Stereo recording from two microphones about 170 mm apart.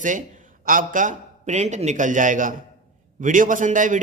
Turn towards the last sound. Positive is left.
turn(degrees=-50)  # may be behind; listen again after turning